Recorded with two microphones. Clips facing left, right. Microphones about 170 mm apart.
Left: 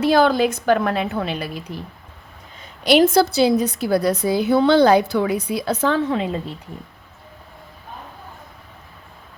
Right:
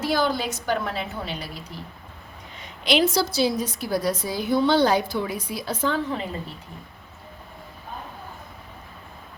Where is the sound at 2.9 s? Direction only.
50° left (ahead or behind); by 6.4 s 90° left.